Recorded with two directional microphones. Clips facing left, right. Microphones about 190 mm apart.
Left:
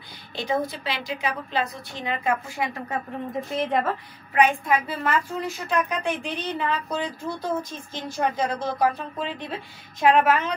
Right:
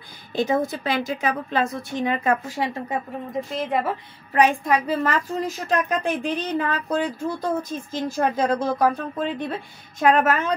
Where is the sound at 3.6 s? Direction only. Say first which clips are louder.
Left 1 dB; 5° right (ahead or behind).